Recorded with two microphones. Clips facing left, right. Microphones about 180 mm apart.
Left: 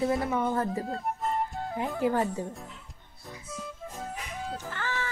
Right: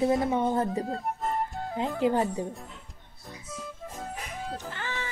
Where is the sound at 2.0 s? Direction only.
20° right (ahead or behind).